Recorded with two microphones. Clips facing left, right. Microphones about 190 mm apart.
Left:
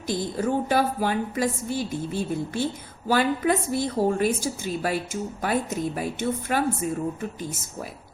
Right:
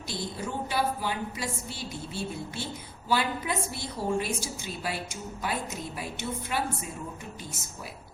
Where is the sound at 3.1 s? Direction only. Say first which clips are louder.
Left 7 dB; 45° left (ahead or behind).